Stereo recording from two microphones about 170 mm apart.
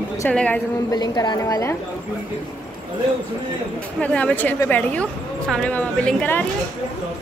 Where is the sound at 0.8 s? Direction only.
25° left (ahead or behind).